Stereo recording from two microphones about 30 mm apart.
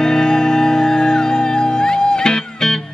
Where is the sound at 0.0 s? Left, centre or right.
Left.